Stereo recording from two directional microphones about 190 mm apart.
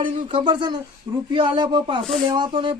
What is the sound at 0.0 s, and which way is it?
Speech, 25° right (ahead or behind).